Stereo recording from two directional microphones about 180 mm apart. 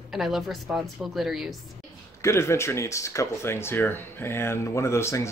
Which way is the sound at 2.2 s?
15° left (ahead or behind).